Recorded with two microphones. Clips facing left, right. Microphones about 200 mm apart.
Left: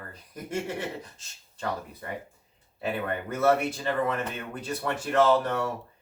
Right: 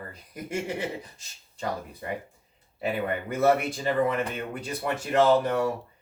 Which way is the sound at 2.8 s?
15° right (ahead or behind).